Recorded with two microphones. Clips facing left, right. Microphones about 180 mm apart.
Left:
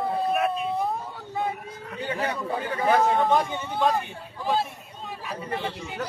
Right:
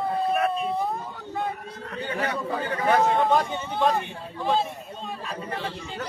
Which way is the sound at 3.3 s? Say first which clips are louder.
Even; 15° left (ahead or behind).